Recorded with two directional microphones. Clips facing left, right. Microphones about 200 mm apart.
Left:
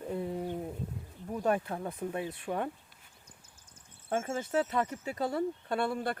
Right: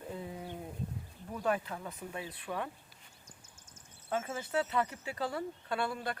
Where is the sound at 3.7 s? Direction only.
50° left (ahead or behind).